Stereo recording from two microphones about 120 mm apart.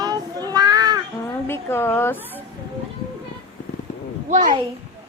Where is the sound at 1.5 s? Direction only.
20° left (ahead or behind).